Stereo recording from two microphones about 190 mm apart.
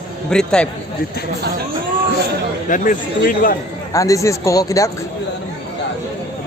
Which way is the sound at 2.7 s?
40° left (ahead or behind).